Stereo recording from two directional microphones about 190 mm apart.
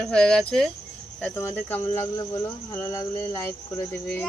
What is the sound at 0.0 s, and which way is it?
Child singing, 5° left (ahead or behind).